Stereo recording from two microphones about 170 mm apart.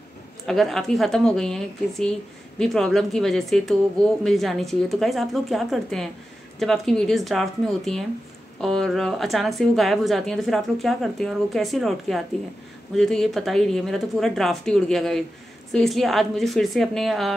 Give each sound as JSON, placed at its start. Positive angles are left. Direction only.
{"t": 0.5, "sound": "a woman's voice", "side_deg": 0}